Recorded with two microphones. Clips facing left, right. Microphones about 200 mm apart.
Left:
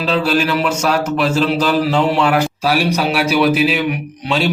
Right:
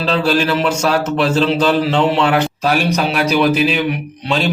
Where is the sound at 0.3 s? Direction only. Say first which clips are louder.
Right 1 dB; 30° right (ahead or behind).